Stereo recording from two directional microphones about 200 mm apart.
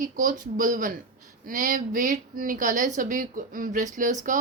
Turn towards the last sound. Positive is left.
turn(degrees=-40)  # may be behind; listen again after turning